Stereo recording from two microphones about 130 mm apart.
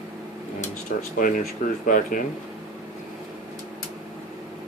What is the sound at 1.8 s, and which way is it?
Speech, 90° left.